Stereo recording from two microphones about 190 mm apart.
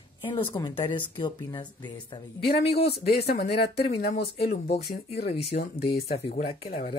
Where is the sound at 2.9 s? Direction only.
55° left (ahead or behind).